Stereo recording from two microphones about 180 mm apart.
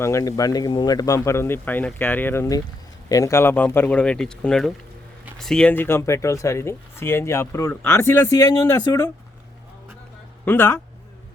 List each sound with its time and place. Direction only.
0.0 s speech: 15° left (ahead or behind)
10.4 s speech: 10° left (ahead or behind)